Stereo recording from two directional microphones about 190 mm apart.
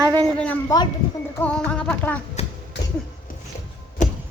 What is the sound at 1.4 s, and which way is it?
Music, 5° left (ahead or behind).